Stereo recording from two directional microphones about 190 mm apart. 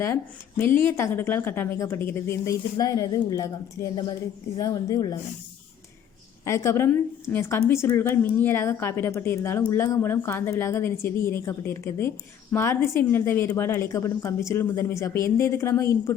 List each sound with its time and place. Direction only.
0.7 s a woman's voice: 10° left (ahead or behind)
6.4 s a woman's voice: 15° left (ahead or behind)